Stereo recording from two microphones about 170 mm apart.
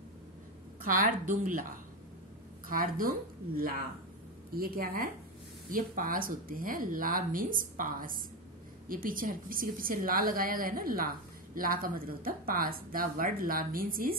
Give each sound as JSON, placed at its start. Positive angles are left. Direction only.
{"t": 1.4, "sound": "speech", "side_deg": -55}
{"t": 2.7, "sound": "a woman's voice", "side_deg": -55}